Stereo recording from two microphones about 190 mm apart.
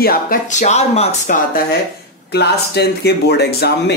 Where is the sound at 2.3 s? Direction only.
60° left (ahead or behind).